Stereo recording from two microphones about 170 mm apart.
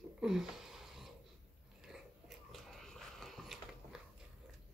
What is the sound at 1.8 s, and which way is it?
Biting, centre (ahead or behind).